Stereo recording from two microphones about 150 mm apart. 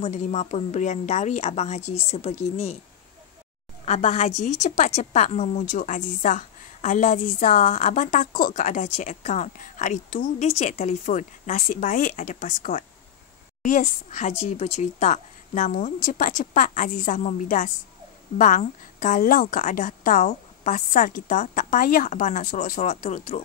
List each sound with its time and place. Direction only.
0.0 s a woman's voice: 45° left (ahead or behind)
3.8 s a woman's voice: 50° left (ahead or behind); by 8.5 s 65° left (ahead or behind)
8.5 s a woman's voice: 50° left (ahead or behind)